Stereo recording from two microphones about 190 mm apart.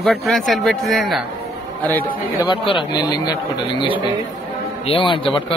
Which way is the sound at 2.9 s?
20° left (ahead or behind).